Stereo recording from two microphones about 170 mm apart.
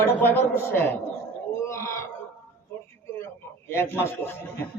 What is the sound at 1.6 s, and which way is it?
Wail, 15° left (ahead or behind).